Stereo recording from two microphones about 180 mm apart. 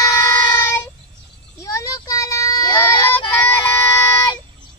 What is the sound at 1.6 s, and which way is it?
Child singing, 20° left (ahead or behind).